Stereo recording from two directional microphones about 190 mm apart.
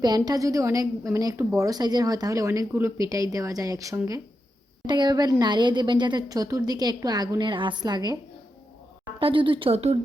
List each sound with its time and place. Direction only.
0.0 s a woman's voice: 20° right (ahead or behind)